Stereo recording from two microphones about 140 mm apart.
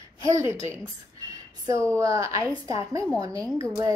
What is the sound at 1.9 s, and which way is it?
A woman's voice, 20° right (ahead or behind).